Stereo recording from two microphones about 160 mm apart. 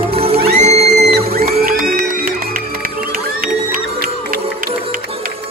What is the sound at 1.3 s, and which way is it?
Music, 65° right (ahead or behind).